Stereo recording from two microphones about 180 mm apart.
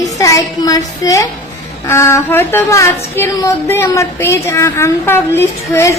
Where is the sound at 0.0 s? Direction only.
15° left (ahead or behind).